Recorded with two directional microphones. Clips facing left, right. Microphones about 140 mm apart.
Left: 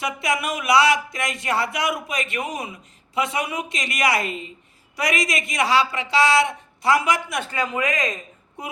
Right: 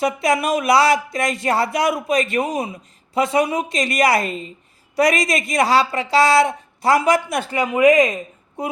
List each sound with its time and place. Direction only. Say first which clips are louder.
0.0 s speech: right 6 dB; 40° right (ahead or behind)
7.5 s speech: right 12 dB; 20° right (ahead or behind)